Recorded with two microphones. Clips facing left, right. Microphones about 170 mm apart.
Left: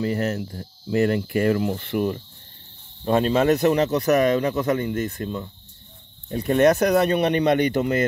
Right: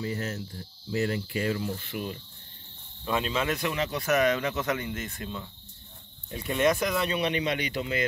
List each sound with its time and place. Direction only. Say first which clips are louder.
0.0 s a man's voice: left 9 dB; 65° left (ahead or behind)